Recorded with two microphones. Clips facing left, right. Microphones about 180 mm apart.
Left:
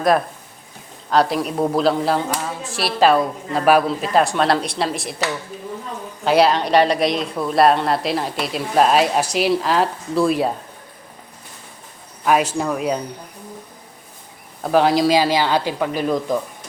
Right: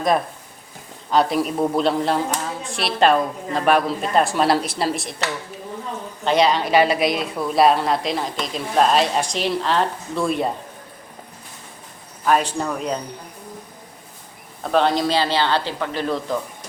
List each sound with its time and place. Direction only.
1.1 s speech: centre (ahead or behind)
6.2 s speech: 5° left (ahead or behind)
12.2 s speech: 5° left (ahead or behind)
14.6 s speech: 5° left (ahead or behind)